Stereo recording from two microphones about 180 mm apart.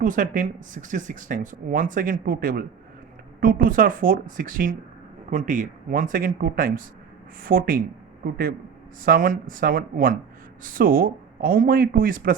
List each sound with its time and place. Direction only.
0.0 s speech: 45° right (ahead or behind)